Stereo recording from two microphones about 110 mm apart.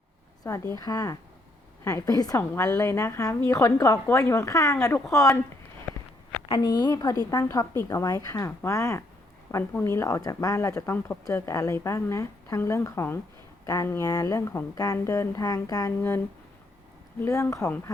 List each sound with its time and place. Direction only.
0.4 s a woman's voice: 30° left (ahead or behind)
6.5 s a woman's voice: 40° left (ahead or behind)
15.9 s a woman's voice: 20° left (ahead or behind)